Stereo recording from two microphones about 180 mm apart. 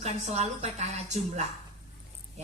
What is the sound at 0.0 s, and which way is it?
Speech, 35° right (ahead or behind).